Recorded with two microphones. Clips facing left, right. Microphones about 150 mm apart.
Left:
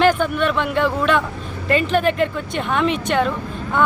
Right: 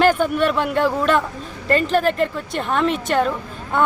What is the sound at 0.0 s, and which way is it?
Speech, 5° right (ahead or behind).